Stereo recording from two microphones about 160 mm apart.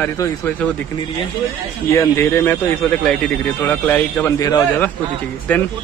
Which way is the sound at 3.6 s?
10° left (ahead or behind).